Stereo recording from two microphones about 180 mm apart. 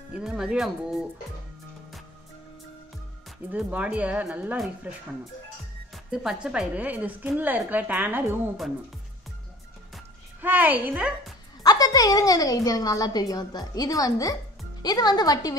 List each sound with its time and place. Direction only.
0.1 s speech: 5° right (ahead or behind)
3.5 s a woman's voice: 5° right (ahead or behind)
6.1 s a woman's voice: 5° right (ahead or behind)
10.4 s a woman's voice: 10° right (ahead or behind)
11.6 s a woman's voice: 20° left (ahead or behind)